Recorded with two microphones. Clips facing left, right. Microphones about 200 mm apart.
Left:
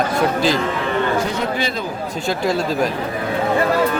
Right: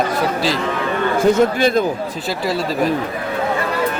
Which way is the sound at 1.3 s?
50° right (ahead or behind).